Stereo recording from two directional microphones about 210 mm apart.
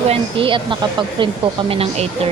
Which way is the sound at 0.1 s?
25° right (ahead or behind).